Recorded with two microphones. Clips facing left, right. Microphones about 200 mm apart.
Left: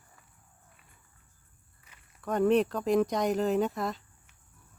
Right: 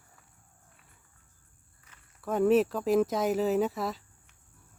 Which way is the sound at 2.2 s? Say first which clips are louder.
Right 1 dB; 5° right (ahead or behind).